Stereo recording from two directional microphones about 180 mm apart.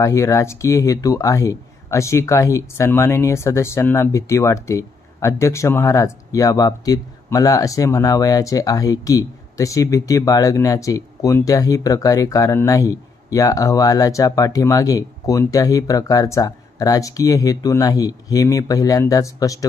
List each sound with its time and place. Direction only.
0.0 s speech: 15° left (ahead or behind)